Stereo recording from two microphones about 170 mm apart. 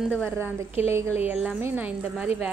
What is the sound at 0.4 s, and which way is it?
A woman's voice, 15° right (ahead or behind).